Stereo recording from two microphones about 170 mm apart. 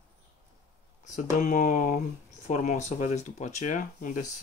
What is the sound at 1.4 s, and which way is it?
Speech, 50° left (ahead or behind).